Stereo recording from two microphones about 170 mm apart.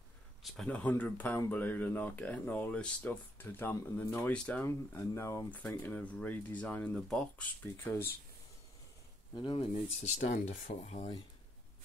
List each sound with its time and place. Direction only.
0.4 s speech: centre (ahead or behind)
9.3 s speech: 25° left (ahead or behind)
10.0 s speech: 45° left (ahead or behind)